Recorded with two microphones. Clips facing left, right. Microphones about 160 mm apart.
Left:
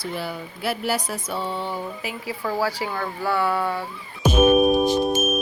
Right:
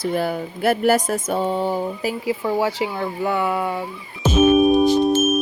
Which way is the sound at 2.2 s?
25° right (ahead or behind).